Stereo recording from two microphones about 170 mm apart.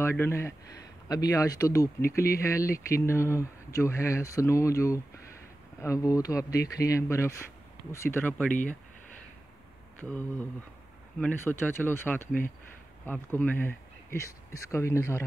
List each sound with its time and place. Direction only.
0.0 s speech: 15° left (ahead or behind)
9.9 s speech: 10° left (ahead or behind)